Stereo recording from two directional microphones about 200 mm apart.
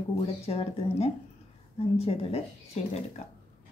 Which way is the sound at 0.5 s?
30° left (ahead or behind).